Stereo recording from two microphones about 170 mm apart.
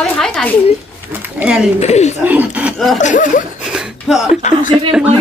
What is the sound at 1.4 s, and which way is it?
Speech, 5° right (ahead or behind).